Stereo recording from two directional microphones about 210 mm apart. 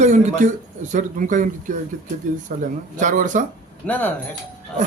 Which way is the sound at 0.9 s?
40° right (ahead or behind).